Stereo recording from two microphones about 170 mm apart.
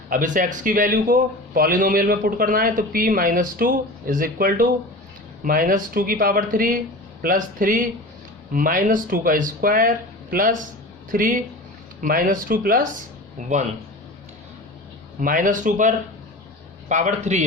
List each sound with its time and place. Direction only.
0.1 s speech: 50° right (ahead or behind)
15.2 s speech: 50° right (ahead or behind)